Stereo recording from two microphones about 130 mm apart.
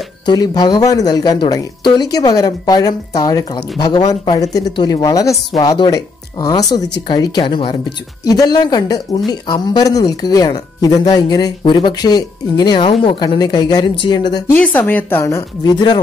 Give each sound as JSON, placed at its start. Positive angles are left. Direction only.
{"t": 0.3, "sound": "speech", "side_deg": 30}
{"t": 14.5, "sound": "speech", "side_deg": 15}
{"t": 15.7, "sound": "speech", "side_deg": 35}